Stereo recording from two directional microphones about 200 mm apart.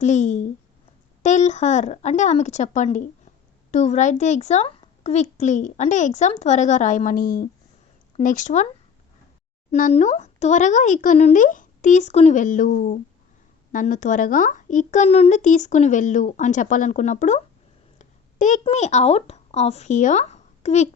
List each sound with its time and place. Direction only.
0.0 s a child's voice: 35° left (ahead or behind)
9.7 s a child's voice: 40° left (ahead or behind)